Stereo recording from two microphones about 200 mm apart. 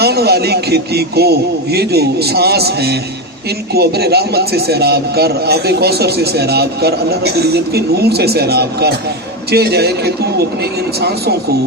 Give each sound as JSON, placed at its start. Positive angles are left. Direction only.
{"t": 0.0, "sound": "a man's voice", "side_deg": -55}